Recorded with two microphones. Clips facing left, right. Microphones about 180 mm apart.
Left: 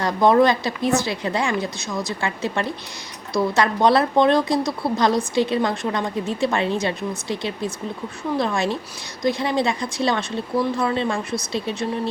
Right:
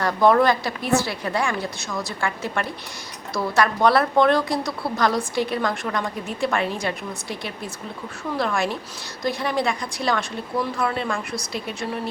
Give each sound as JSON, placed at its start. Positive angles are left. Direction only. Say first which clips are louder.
{"t": 0.0, "sound": "a woman's voice", "louder": "left 1 dB", "side_deg": 20}